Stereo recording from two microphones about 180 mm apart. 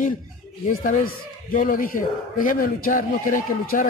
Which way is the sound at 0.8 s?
45° left (ahead or behind).